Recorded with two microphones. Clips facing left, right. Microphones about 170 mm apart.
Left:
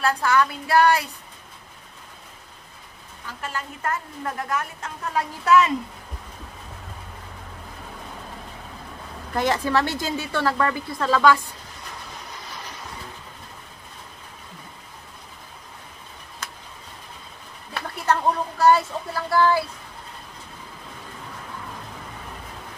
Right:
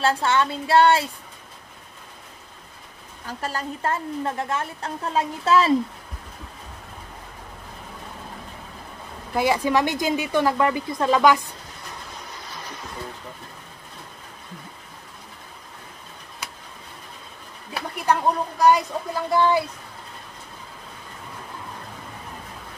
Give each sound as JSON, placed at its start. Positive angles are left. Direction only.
{"t": 0.0, "sound": "a woman's voice", "side_deg": -25}
{"t": 3.3, "sound": "a woman's voice", "side_deg": -40}
{"t": 9.3, "sound": "speech", "side_deg": -10}
{"t": 16.4, "sound": "a sound", "side_deg": -10}
{"t": 17.9, "sound": "speech", "side_deg": -15}